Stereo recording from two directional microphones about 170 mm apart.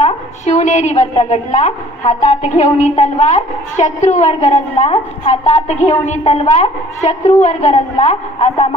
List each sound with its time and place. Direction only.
0.0 s a woman's voice: 45° left (ahead or behind)